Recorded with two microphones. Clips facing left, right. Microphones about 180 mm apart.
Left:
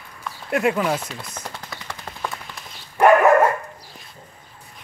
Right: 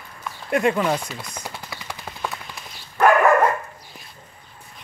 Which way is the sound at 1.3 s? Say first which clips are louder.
Even; 10° right (ahead or behind).